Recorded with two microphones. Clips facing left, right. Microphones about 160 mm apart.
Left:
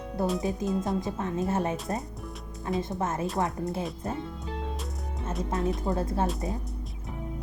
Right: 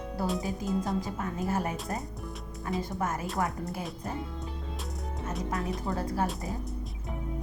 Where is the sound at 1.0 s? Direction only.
25° left (ahead or behind).